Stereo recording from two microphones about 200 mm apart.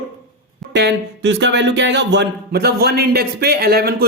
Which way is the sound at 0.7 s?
60° right (ahead or behind).